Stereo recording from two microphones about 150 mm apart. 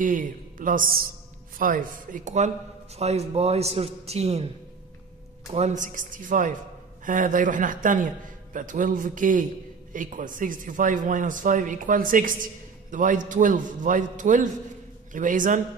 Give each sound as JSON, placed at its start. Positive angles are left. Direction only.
{"t": 0.0, "sound": "a man's voice", "side_deg": -65}
{"t": 5.5, "sound": "a man's voice", "side_deg": -50}